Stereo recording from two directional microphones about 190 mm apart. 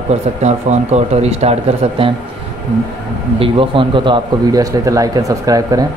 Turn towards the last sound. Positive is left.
turn(degrees=-20)  # may be behind; listen again after turning